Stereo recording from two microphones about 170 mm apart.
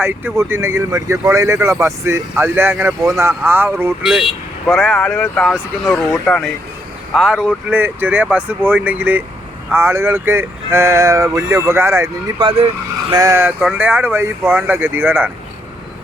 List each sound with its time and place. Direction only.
0.0 s speech: 10° right (ahead or behind)
4.6 s speech: centre (ahead or behind); by 12.1 s 15° right (ahead or behind)
12.4 s speech: 30° right (ahead or behind)
13.1 s speech: 20° right (ahead or behind)